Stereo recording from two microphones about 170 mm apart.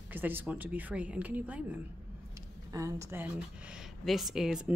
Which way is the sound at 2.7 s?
20° right (ahead or behind).